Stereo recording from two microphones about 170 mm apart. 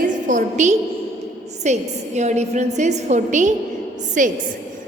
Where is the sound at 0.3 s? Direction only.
45° right (ahead or behind).